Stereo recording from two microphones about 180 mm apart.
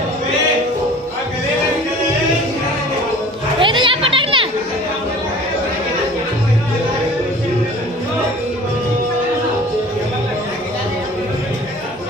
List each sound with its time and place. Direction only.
3.5 s children playing: 25° right (ahead or behind)